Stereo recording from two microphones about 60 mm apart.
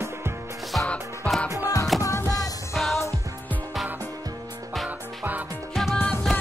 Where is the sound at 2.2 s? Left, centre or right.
Left.